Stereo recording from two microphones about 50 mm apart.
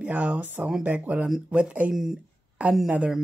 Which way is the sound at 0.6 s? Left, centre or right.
Centre.